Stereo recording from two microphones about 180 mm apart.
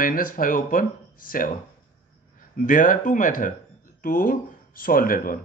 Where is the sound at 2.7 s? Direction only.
45° left (ahead or behind).